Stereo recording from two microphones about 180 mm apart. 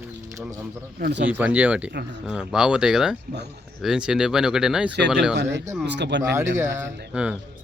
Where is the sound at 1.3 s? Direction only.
10° right (ahead or behind).